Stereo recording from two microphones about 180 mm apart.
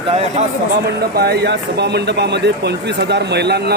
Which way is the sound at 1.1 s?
60° right (ahead or behind).